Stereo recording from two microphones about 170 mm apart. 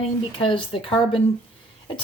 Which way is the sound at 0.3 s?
30° left (ahead or behind).